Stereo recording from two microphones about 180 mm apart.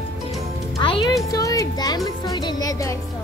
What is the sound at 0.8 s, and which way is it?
Music, 30° left (ahead or behind).